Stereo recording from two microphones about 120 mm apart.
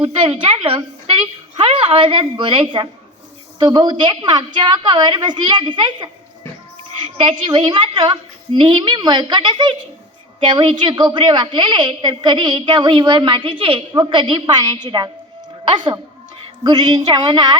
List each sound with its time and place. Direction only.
0.2 s a woman's voice: 50° right (ahead or behind)